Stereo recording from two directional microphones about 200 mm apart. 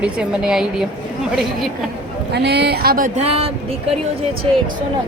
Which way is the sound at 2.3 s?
55° right (ahead or behind).